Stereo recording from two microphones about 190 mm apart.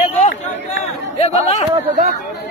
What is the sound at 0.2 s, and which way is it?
Chatter, 35° left (ahead or behind).